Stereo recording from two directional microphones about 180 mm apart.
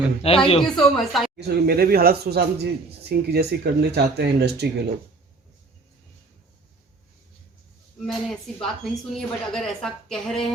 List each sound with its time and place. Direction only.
0.2 s a man's voice: 30° left (ahead or behind)
0.6 s a woman's voice: centre (ahead or behind)
1.4 s speech: 60° right (ahead or behind)
8.0 s a woman's voice: 5° left (ahead or behind)